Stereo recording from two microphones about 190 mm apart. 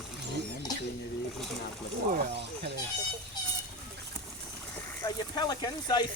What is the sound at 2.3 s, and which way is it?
Speech, 60° right (ahead or behind).